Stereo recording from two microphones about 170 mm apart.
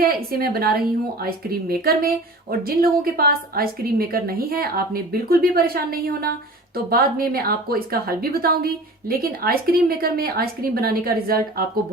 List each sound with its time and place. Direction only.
0.0 s a woman's voice: 60° right (ahead or behind)